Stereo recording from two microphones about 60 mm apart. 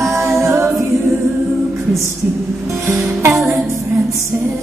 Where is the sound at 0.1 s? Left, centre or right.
Right.